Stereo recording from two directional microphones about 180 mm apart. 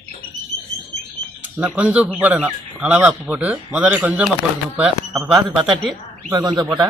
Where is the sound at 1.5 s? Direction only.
5° right (ahead or behind).